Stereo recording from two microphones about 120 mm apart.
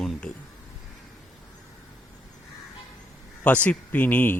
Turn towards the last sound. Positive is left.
turn(degrees=15)  # may be behind; listen again after turning